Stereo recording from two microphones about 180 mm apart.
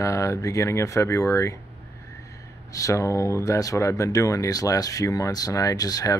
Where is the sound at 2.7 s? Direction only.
20° left (ahead or behind).